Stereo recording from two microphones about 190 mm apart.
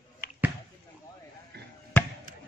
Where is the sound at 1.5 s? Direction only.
60° right (ahead or behind).